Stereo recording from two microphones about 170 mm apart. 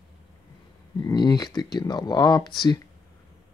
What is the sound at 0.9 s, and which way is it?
Speech, 25° left (ahead or behind).